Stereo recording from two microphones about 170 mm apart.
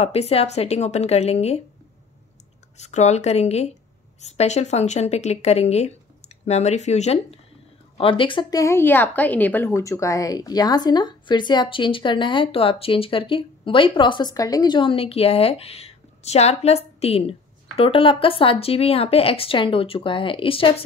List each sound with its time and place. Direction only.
0.0 s speech: 35° left (ahead or behind)
2.8 s speech: 40° left (ahead or behind)